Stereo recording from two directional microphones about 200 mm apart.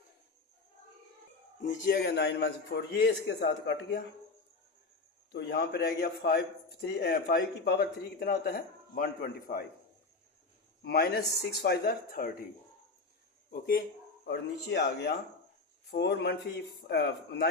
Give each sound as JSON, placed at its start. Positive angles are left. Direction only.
{"t": 1.6, "sound": "a man's voice", "side_deg": 45}
{"t": 5.3, "sound": "speech", "side_deg": 55}
{"t": 10.8, "sound": "speech", "side_deg": 50}
{"t": 13.5, "sound": "speech", "side_deg": 45}
{"t": 14.3, "sound": "a man's voice", "side_deg": 55}